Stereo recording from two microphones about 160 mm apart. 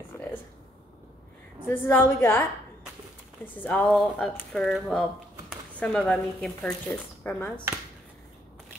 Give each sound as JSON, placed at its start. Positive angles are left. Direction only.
{"t": 0.1, "sound": "a sound", "side_deg": 15}
{"t": 1.7, "sound": "a woman's voice", "side_deg": 15}
{"t": 3.6, "sound": "a woman's voice", "side_deg": 10}